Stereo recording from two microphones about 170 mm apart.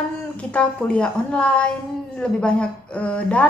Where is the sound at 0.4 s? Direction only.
5° left (ahead or behind).